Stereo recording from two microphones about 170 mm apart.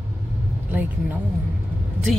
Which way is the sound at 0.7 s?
10° right (ahead or behind).